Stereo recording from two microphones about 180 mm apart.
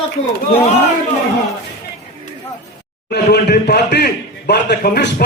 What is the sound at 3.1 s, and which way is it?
A man's voice, 65° left (ahead or behind).